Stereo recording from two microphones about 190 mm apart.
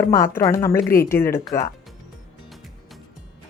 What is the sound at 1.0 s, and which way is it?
Speech, 10° left (ahead or behind).